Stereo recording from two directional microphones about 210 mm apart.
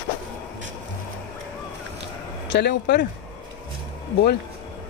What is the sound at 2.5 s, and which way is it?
Speech, 55° left (ahead or behind).